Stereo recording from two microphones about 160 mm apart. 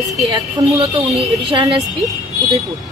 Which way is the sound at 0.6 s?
30° right (ahead or behind).